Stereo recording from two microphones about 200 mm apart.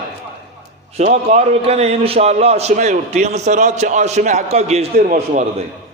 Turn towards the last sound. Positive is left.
turn(degrees=-40)  # may be behind; listen again after turning